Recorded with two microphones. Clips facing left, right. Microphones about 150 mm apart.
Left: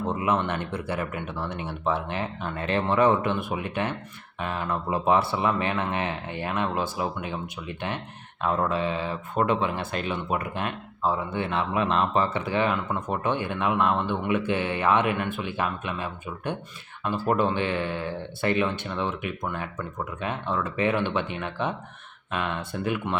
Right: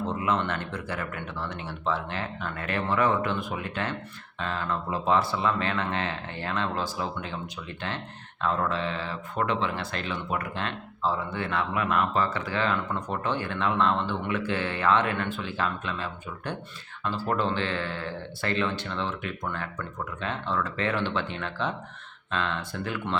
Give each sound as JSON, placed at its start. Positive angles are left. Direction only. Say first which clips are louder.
{"t": 0.1, "sound": "speech", "louder": "left 4 dB", "side_deg": 20}
{"t": 8.4, "sound": "speech", "louder": "left 2 dB", "side_deg": 15}